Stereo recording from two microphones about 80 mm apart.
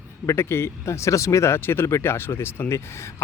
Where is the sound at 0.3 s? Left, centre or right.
Left.